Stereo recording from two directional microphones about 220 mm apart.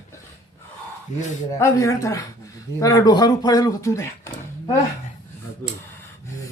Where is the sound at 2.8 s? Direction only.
15° left (ahead or behind).